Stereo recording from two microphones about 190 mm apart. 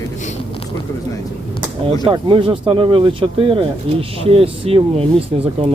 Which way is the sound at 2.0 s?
25° right (ahead or behind).